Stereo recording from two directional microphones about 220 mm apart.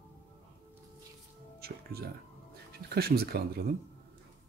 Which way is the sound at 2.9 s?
45° right (ahead or behind).